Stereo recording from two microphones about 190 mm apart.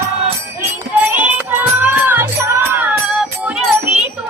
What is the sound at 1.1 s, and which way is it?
Music, 10° right (ahead or behind).